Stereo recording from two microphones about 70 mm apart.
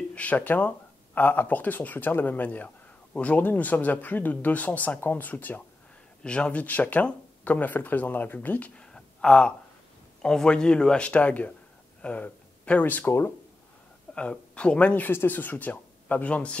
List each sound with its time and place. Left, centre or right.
0.1 s speech: left
8.9 s a sound: centre
10.2 s a man's voice: centre; by 13.1 s left
14.1 s speech: centre